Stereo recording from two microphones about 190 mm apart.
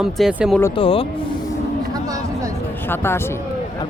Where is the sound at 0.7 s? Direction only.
30° left (ahead or behind).